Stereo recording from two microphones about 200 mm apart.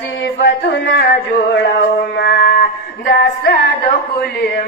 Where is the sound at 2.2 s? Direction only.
55° left (ahead or behind).